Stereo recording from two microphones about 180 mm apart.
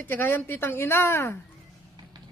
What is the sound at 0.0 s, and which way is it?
A woman's voice, 10° left (ahead or behind).